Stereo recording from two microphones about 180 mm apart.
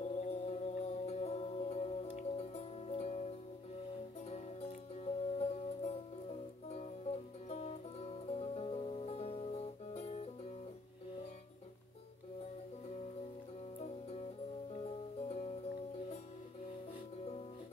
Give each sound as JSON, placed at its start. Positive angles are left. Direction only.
{"t": 0.0, "sound": "music", "side_deg": 40}
{"t": 13.7, "sound": "music", "side_deg": 35}